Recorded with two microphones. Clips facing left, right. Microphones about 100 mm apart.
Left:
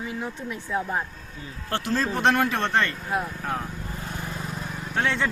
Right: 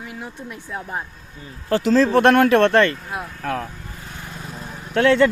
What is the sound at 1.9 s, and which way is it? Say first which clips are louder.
Speech: right 8 dB; 80° right.